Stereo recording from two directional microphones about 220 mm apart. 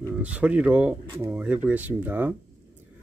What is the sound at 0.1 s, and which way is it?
Speech, 5° right (ahead or behind).